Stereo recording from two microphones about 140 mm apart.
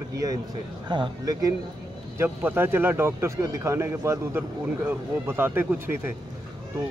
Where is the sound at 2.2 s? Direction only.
15° right (ahead or behind).